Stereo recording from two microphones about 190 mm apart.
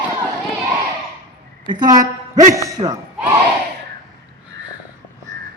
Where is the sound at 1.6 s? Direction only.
20° right (ahead or behind).